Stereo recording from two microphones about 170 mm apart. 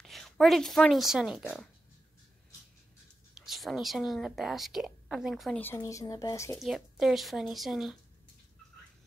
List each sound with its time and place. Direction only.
0.0 s speech: centre (ahead or behind)
3.3 s a woman's voice: centre (ahead or behind)
5.8 s speech: 20° left (ahead or behind)
6.6 s a woman's voice: centre (ahead or behind)